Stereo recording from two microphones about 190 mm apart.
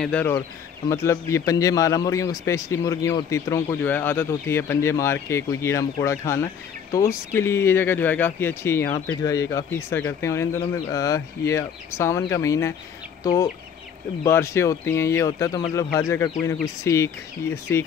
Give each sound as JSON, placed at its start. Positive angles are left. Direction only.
{"t": 0.0, "sound": "a man's voice", "side_deg": 10}